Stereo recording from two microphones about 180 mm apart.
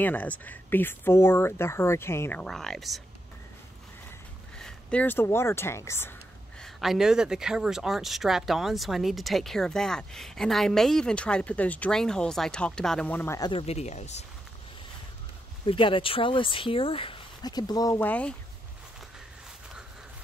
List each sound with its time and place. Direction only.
0.0 s speech: 10° left (ahead or behind)
4.6 s speech: 5° left (ahead or behind)
6.6 s speech: centre (ahead or behind); by 13.5 s 15° left (ahead or behind)
13.5 s speech: 35° left (ahead or behind)
15.6 s speech: 30° left (ahead or behind); by 18.3 s 10° left (ahead or behind)